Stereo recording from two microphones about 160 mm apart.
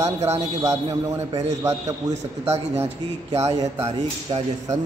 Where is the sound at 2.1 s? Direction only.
40° right (ahead or behind).